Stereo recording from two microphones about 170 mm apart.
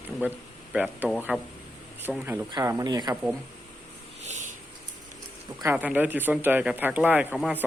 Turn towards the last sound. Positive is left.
turn(degrees=-5)  # may be behind; listen again after turning